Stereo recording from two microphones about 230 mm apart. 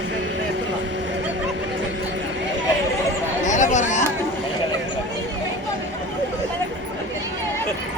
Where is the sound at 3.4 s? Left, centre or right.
Left.